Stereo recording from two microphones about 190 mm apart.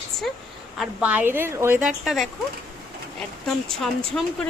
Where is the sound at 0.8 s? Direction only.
5° right (ahead or behind).